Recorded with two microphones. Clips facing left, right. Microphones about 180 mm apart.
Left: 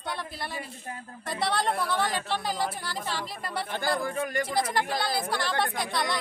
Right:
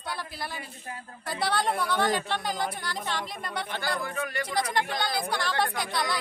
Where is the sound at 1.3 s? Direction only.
Centre (ahead or behind).